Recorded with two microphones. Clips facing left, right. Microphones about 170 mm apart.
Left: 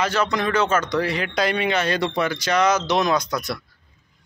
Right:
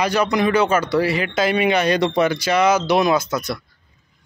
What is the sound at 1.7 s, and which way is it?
Speech, 15° right (ahead or behind).